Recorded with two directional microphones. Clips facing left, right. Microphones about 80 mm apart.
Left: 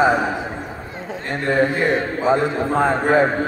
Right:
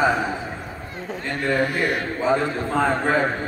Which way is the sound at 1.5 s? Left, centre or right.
Left.